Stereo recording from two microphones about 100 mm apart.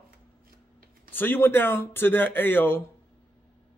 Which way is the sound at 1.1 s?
20° left (ahead or behind).